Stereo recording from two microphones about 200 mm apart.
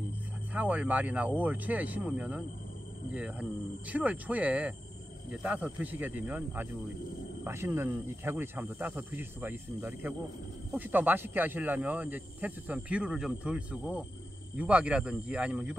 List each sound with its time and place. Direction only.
0.5 s speech: 5° right (ahead or behind)